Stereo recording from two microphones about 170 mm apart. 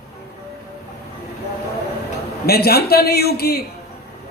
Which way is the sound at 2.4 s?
65° left (ahead or behind).